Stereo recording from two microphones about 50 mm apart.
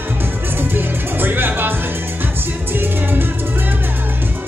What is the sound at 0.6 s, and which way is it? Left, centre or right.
Music, right.